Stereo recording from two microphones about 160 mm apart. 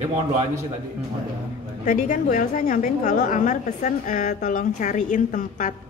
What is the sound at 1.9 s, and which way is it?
A woman's voice, 50° left (ahead or behind).